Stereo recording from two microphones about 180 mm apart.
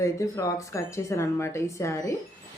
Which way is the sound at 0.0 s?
15° left (ahead or behind).